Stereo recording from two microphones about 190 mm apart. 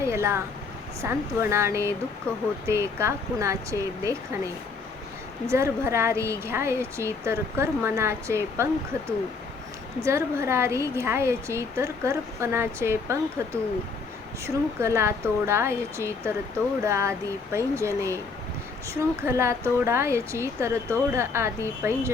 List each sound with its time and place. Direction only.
0.0 s a sound: 15° right (ahead or behind)
1.0 s a woman's voice: 15° right (ahead or behind)
10.0 s a woman's voice: 15° right (ahead or behind)
19.2 s a woman's voice: 15° right (ahead or behind)